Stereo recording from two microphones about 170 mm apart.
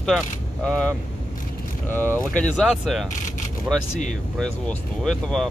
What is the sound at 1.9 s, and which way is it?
Speech, 10° left (ahead or behind).